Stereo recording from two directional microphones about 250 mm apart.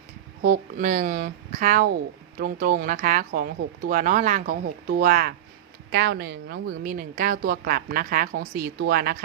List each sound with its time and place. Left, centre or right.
0.4 s a woman's voice: right